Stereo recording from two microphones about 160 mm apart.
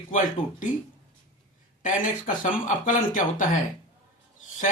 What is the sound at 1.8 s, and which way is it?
Speech, 55° left (ahead or behind).